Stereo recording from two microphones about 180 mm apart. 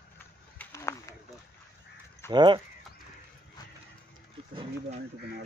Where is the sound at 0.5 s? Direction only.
15° left (ahead or behind).